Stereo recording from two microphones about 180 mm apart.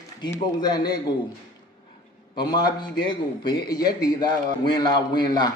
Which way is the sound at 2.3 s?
25° left (ahead or behind).